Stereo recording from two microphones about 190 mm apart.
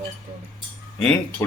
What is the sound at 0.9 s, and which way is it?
Speech, 5° left (ahead or behind).